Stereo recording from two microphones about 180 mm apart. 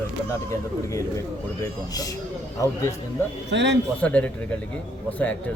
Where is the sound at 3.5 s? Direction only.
75° right (ahead or behind).